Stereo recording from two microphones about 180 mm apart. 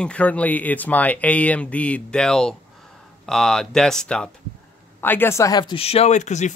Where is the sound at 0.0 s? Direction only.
5° left (ahead or behind).